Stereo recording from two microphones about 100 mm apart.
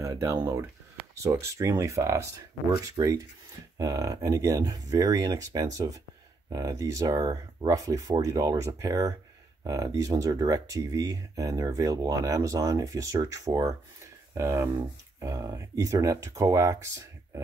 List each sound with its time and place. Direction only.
0.0 s speech: 30° right (ahead or behind)